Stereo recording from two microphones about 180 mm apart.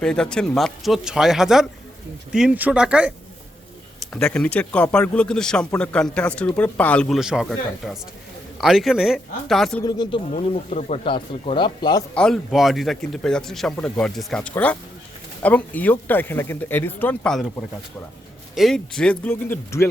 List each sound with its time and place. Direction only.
0.0 s speech: 5° left (ahead or behind)
4.1 s speech: 5° left (ahead or behind)
9.8 s speech: 25° left (ahead or behind)
10.3 s speech: 40° left (ahead or behind); by 12.0 s 25° left (ahead or behind)
12.1 s speech: 5° left (ahead or behind)
18.5 s speech: centre (ahead or behind)